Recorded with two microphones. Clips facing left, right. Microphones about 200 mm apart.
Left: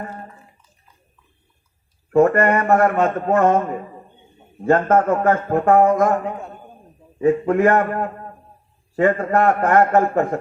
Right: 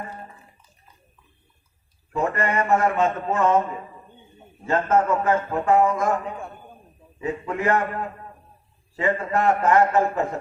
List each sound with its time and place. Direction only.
2.1 s a man's voice: 55° left (ahead or behind)